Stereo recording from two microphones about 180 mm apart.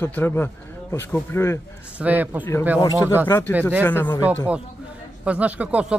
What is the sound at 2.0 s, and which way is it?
Speech, 10° right (ahead or behind).